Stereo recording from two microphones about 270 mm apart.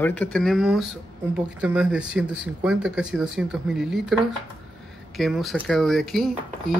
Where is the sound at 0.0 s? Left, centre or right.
Centre.